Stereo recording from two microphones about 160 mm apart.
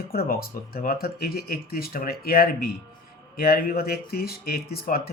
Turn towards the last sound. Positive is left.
turn(degrees=70)  # may be behind; listen again after turning